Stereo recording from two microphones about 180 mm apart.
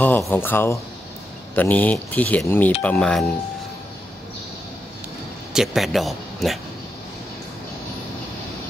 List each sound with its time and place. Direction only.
0.0 s speech: 10° left (ahead or behind)
5.5 s speech: 5° right (ahead or behind)